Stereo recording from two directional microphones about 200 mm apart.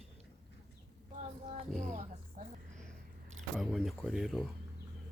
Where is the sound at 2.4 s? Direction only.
40° right (ahead or behind).